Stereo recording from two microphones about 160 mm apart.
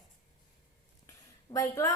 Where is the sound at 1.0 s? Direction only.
20° left (ahead or behind).